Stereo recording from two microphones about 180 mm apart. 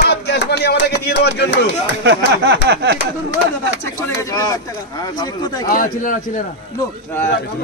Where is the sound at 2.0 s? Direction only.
70° right (ahead or behind).